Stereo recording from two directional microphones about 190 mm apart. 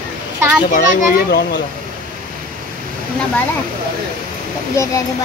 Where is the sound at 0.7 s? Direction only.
55° left (ahead or behind).